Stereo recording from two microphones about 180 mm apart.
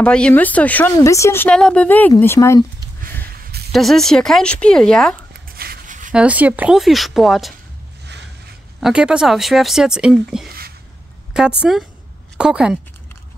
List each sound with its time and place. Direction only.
0.0 s speech: 5° left (ahead or behind)
3.7 s speech: centre (ahead or behind)
5.6 s a sound: 50° right (ahead or behind)
6.1 s speech: 10° right (ahead or behind)
8.0 s a sound: 70° right (ahead or behind)
8.8 s speech: 5° right (ahead or behind)